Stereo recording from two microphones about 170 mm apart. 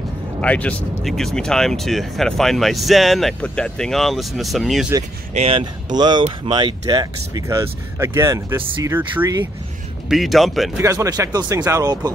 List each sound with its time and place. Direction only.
0.4 s speech: 10° left (ahead or behind)
5.3 s speech: 35° right (ahead or behind)
5.9 s speech: 25° right (ahead or behind)
10.0 s speech: centre (ahead or behind)
10.8 s speech: 20° right (ahead or behind)